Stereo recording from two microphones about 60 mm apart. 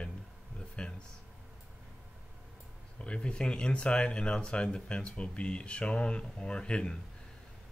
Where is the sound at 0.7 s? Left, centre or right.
Centre.